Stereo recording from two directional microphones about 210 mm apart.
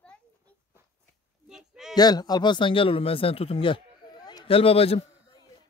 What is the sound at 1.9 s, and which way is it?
Speech, 20° left (ahead or behind).